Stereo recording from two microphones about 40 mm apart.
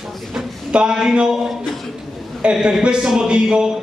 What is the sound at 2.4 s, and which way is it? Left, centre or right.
A man's voice, right.